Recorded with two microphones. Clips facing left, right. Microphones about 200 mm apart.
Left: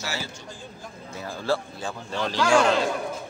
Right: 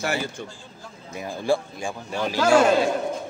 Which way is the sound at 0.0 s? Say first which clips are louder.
Right 7 dB; 55° right (ahead or behind).